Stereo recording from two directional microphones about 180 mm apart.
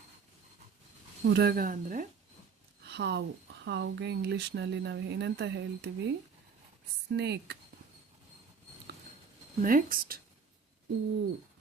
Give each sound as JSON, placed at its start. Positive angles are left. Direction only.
{"t": 1.2, "sound": "speech", "side_deg": -65}
{"t": 2.9, "sound": "speech", "side_deg": -70}
{"t": 9.6, "sound": "speech", "side_deg": -50}